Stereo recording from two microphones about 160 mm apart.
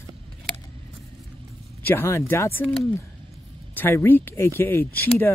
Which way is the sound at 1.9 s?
15° left (ahead or behind).